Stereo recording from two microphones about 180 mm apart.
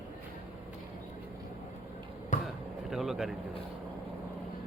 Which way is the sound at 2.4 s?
Centre (ahead or behind).